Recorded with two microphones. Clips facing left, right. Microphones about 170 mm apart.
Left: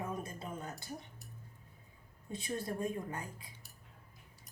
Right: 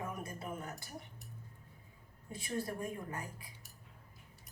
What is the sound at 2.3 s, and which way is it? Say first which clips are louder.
Speech: even; 20° left (ahead or behind).